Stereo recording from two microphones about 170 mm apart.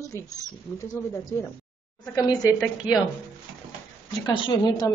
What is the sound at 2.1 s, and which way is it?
Speech, 20° left (ahead or behind).